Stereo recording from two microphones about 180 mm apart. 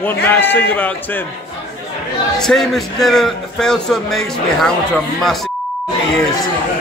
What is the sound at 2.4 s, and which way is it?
A man's voice, centre (ahead or behind).